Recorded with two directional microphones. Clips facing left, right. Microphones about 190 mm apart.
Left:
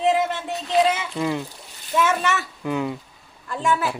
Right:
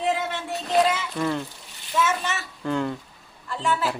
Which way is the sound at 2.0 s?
70° left (ahead or behind).